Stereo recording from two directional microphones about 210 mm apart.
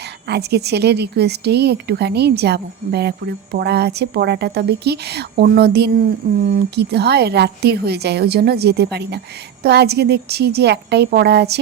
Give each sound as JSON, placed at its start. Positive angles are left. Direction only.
{"t": 0.3, "sound": "a woman's voice", "side_deg": -50}